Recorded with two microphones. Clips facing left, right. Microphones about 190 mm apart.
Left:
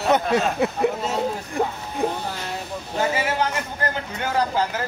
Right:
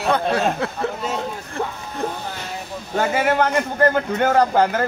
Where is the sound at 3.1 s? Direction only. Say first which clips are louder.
Right 5 dB; 55° right (ahead or behind).